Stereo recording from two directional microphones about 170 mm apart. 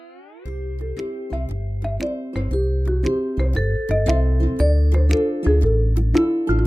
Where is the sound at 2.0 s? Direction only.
5° left (ahead or behind).